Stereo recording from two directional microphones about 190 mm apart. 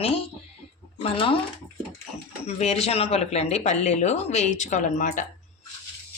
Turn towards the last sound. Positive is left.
turn(degrees=40)  # may be behind; listen again after turning